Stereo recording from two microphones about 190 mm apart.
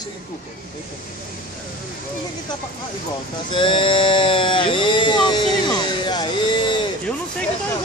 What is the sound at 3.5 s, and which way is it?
Speech, 25° left (ahead or behind).